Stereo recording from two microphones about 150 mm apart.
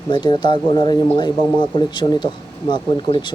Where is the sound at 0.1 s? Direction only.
30° left (ahead or behind).